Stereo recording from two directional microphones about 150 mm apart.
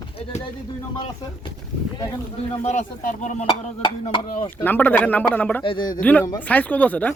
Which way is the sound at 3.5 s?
30° left (ahead or behind).